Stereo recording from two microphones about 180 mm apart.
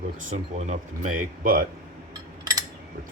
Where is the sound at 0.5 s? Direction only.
40° right (ahead or behind).